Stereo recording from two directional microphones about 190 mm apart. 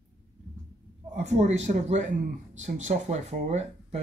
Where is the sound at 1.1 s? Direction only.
40° right (ahead or behind).